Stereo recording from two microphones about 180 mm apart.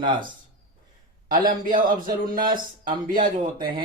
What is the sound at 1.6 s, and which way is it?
Speech, 50° right (ahead or behind).